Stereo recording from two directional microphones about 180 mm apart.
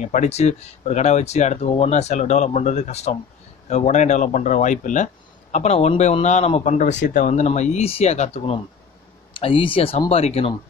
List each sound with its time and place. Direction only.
0.0 s speech: 40° left (ahead or behind)